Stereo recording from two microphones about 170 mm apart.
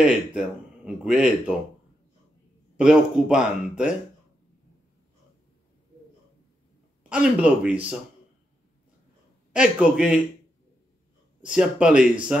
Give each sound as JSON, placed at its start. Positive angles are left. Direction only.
{"t": 0.0, "sound": "speech", "side_deg": -5}
{"t": 2.8, "sound": "speech", "side_deg": -5}
{"t": 7.0, "sound": "speech", "side_deg": -5}
{"t": 9.5, "sound": "speech", "side_deg": -5}
{"t": 11.4, "sound": "speech", "side_deg": -5}